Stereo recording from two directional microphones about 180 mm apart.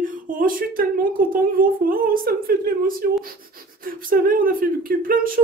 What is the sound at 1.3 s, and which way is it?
A woman's voice, 50° right (ahead or behind).